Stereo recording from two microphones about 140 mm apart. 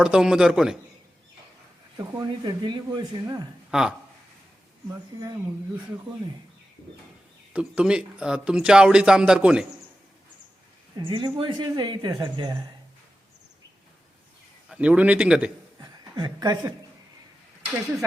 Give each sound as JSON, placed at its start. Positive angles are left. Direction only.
{"t": 0.0, "sound": "speech", "side_deg": -5}
{"t": 2.0, "sound": "speech", "side_deg": -25}
{"t": 3.7, "sound": "speech", "side_deg": -5}
{"t": 5.1, "sound": "speech", "side_deg": -30}
{"t": 7.5, "sound": "speech", "side_deg": -5}
{"t": 10.9, "sound": "speech", "side_deg": -35}
{"t": 14.7, "sound": "a man's voice", "side_deg": -10}
{"t": 15.8, "sound": "a sound", "side_deg": -30}